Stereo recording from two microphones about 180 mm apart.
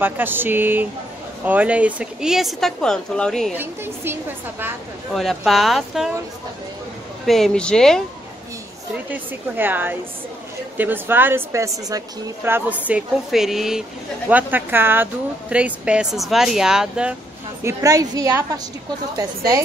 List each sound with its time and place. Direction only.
0.0 s a woman's voice: 10° right (ahead or behind)
3.5 s a woman's voice: 10° right (ahead or behind)
5.1 s speech: centre (ahead or behind)
7.2 s speech: centre (ahead or behind)
9.1 s a woman's voice: 10° right (ahead or behind)
17.6 s a woman's voice: 20° right (ahead or behind)